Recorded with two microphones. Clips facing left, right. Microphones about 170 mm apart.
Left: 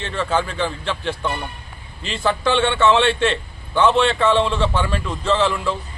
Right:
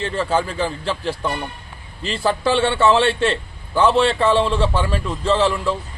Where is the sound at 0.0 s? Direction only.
35° right (ahead or behind).